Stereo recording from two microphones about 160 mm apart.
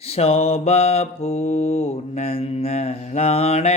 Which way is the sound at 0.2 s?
40° left (ahead or behind).